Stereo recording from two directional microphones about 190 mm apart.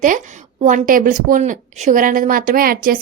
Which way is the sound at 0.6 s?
45° right (ahead or behind).